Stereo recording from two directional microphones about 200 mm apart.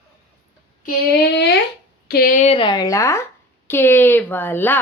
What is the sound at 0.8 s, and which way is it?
Child singing, 55° left (ahead or behind).